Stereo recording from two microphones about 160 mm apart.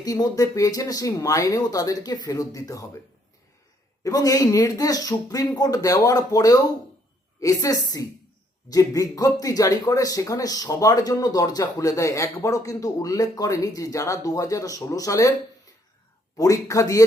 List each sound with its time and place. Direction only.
0.0 s speech: 25° left (ahead or behind)
4.0 s speech: 20° left (ahead or behind)
16.4 s speech: 20° left (ahead or behind)